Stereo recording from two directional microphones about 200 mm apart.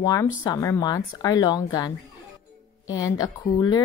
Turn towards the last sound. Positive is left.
turn(degrees=20)  # may be behind; listen again after turning